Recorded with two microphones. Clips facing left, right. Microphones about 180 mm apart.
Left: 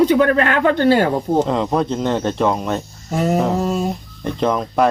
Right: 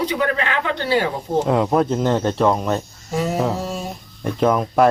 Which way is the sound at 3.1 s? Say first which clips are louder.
Left 3 dB; 55° left (ahead or behind).